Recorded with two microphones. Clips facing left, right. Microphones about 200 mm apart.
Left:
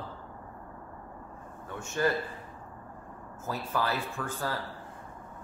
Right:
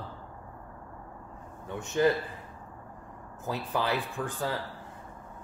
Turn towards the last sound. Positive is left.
turn(degrees=-15)  # may be behind; listen again after turning